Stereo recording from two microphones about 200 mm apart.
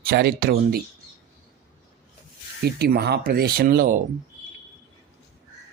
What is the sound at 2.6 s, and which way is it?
Speech, 50° right (ahead or behind).